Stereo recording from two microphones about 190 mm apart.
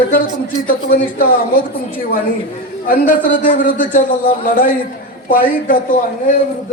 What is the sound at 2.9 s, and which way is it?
A man's voice, 45° left (ahead or behind).